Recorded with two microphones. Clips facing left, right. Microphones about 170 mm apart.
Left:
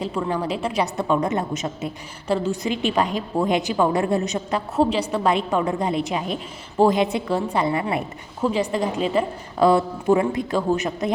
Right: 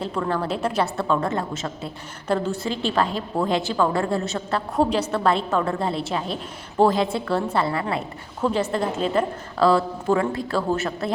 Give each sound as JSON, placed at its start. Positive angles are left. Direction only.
{"t": 0.0, "sound": "a woman's voice", "side_deg": 10}
{"t": 9.6, "sound": "a woman's voice", "side_deg": 20}